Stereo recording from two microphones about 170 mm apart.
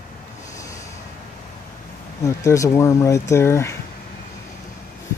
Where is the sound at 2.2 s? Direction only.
20° left (ahead or behind).